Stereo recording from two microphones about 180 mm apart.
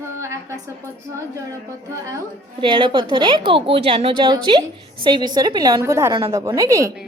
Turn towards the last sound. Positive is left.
turn(degrees=-15)  # may be behind; listen again after turning